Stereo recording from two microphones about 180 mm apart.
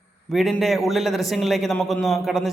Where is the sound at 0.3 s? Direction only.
Centre (ahead or behind).